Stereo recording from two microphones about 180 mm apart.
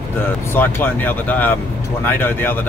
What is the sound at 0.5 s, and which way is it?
Speech, 10° left (ahead or behind).